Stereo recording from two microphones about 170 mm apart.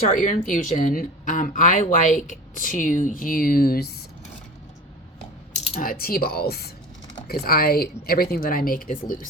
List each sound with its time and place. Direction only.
0.1 s speech: 50° left (ahead or behind)
5.7 s speech: 60° left (ahead or behind)